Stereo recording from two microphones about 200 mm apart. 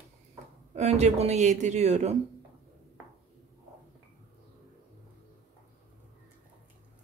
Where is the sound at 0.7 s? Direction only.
35° right (ahead or behind).